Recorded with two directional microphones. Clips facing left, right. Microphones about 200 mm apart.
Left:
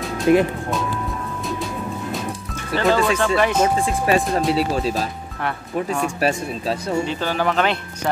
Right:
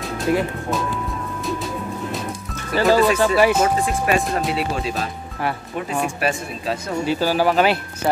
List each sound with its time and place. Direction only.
0.3 s speech: 20° left (ahead or behind)
2.7 s speech: 5° right (ahead or behind)
3.6 s speech: 30° left (ahead or behind)
5.4 s speech: 5° right (ahead or behind)
7.1 s speech: 5° right (ahead or behind)